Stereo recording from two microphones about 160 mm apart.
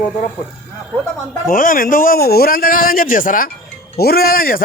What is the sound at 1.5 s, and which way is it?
Speech, 60° left (ahead or behind).